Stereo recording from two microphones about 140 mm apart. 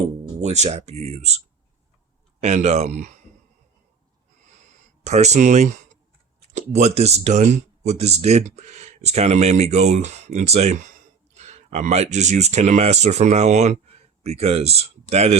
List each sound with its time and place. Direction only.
0.4 s speech: 50° right (ahead or behind)
2.4 s speech: 50° right (ahead or behind)
5.0 s speech: 55° right (ahead or behind)